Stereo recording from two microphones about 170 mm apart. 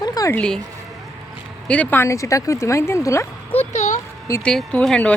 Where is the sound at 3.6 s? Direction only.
40° left (ahead or behind).